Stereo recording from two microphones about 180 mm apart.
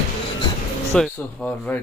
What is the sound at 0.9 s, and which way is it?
Speech, 5° left (ahead or behind).